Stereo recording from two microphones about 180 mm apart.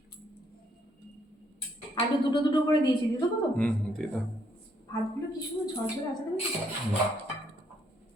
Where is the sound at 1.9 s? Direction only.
25° left (ahead or behind).